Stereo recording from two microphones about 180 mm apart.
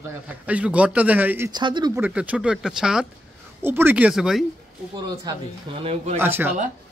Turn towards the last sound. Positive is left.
turn(degrees=-10)  # may be behind; listen again after turning